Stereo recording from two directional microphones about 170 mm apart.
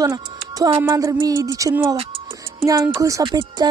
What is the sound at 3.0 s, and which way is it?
Speech, 20° right (ahead or behind).